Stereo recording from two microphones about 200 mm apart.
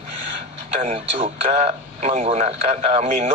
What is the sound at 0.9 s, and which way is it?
Speech, 30° right (ahead or behind).